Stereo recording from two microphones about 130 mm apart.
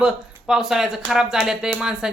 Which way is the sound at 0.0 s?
5° right (ahead or behind).